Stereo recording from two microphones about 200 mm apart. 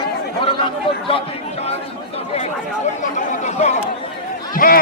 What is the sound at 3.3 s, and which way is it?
A man's voice, 35° left (ahead or behind).